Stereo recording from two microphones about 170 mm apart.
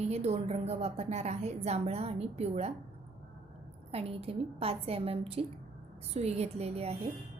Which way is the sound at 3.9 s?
35° right (ahead or behind).